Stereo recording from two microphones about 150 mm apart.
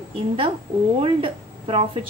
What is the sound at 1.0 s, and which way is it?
Speech, 40° right (ahead or behind).